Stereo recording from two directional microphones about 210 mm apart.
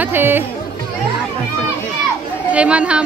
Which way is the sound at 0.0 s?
10° right (ahead or behind).